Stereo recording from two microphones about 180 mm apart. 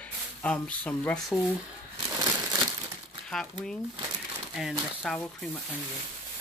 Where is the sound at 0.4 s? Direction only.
5° left (ahead or behind).